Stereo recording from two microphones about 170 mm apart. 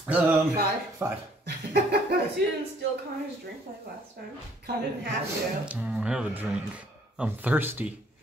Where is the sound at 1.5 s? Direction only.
80° right.